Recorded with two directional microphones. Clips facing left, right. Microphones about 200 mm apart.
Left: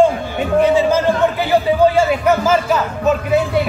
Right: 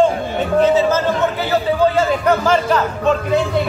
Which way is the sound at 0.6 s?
10° left (ahead or behind).